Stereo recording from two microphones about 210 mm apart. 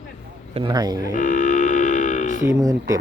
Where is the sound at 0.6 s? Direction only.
20° right (ahead or behind).